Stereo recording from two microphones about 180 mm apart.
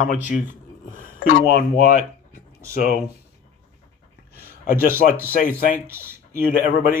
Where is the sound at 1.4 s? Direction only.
55° left (ahead or behind).